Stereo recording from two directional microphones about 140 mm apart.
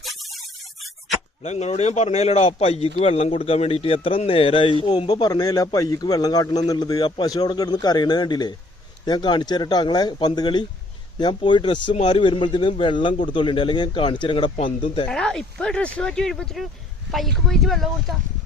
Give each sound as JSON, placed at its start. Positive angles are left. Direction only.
{"t": 0.0, "sound": "a sound", "side_deg": 0}
{"t": 1.4, "sound": "a man's voice", "side_deg": 50}
{"t": 15.0, "sound": "speech", "side_deg": 5}